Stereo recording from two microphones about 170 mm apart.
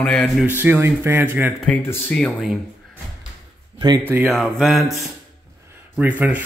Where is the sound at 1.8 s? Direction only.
10° left (ahead or behind).